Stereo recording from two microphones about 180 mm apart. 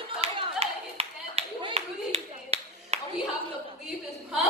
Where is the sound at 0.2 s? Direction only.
35° right (ahead or behind).